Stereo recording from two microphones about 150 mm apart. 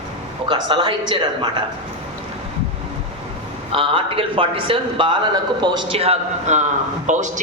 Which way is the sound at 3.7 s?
35° right (ahead or behind).